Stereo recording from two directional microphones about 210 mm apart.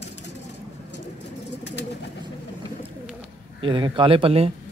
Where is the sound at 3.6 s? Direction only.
25° right (ahead or behind).